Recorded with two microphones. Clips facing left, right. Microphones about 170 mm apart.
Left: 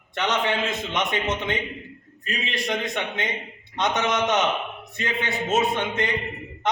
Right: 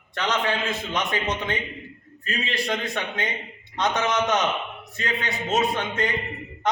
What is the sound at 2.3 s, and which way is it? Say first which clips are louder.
Speech: right 1 dB; centre (ahead or behind).